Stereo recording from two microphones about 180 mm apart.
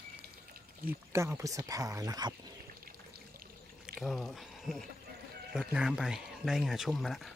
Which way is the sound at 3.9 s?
Centre (ahead or behind).